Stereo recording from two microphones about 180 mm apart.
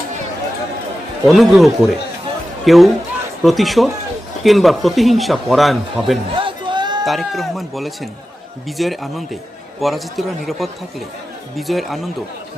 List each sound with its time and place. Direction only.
1.3 s speech: centre (ahead or behind)
6.3 s a sound: 25° right (ahead or behind)
7.0 s speech: centre (ahead or behind)